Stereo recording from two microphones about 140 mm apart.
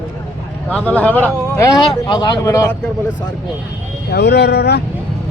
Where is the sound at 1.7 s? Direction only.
30° left (ahead or behind).